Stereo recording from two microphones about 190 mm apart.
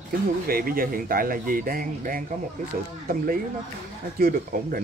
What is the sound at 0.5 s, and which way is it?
Speech, 50° right (ahead or behind).